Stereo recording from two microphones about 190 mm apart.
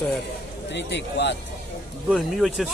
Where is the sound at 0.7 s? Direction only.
65° left (ahead or behind).